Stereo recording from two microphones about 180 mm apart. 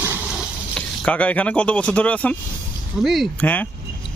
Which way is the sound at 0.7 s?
5° left (ahead or behind).